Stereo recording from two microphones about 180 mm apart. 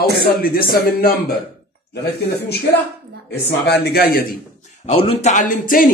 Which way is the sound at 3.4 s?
65° left (ahead or behind).